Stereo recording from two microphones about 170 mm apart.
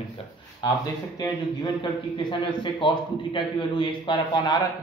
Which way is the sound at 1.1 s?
25° left (ahead or behind).